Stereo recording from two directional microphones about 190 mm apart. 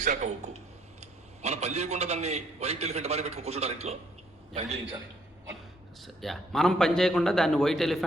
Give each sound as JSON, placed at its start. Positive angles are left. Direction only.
{"t": 0.0, "sound": "a man's voice", "side_deg": -40}
{"t": 6.2, "sound": "a man's voice", "side_deg": 0}